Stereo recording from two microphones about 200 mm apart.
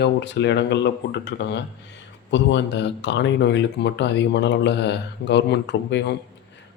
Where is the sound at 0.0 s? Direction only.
60° left (ahead or behind).